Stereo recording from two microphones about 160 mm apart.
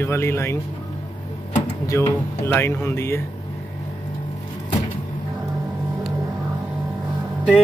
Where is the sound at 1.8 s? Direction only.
20° left (ahead or behind).